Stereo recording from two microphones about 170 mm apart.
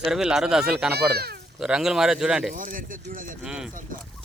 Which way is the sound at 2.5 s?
50° right (ahead or behind).